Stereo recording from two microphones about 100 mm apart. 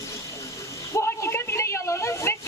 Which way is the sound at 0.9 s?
30° left (ahead or behind).